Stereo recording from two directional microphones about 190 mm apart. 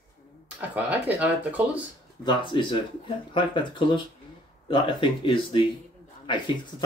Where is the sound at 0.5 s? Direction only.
10° right (ahead or behind).